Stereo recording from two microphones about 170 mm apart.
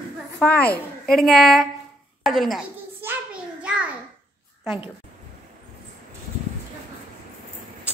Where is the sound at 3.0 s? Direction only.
5° right (ahead or behind).